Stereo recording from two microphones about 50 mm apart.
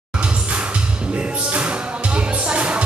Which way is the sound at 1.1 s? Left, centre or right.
Right.